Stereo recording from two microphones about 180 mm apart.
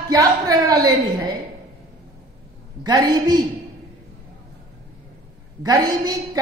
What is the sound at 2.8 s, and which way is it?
Speech, 20° right (ahead or behind).